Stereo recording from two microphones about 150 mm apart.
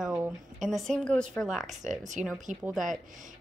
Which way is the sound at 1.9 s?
55° right (ahead or behind).